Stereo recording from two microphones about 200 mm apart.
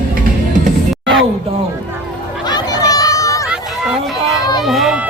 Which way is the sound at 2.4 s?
20° left (ahead or behind).